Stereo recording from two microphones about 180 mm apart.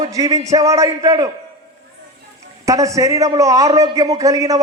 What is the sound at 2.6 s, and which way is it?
A man's voice, 20° right (ahead or behind).